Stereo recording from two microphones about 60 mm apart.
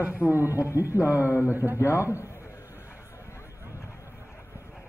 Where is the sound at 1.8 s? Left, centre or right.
Left.